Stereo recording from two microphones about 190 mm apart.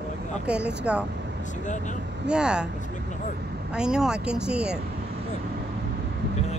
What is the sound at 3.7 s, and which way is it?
Speech, 5° right (ahead or behind).